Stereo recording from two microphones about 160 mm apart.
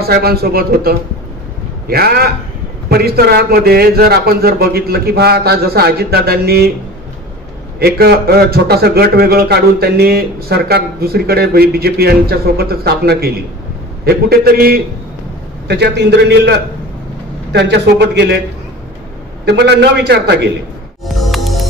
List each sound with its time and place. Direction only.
0.0 s a man's voice: 75° right (ahead or behind)
7.8 s a man's voice: 80° right
14.0 s a man's voice: 70° right (ahead or behind)
15.7 s a man's voice: 90° right
19.4 s a man's voice: 90° right
21.2 s music: centre (ahead or behind)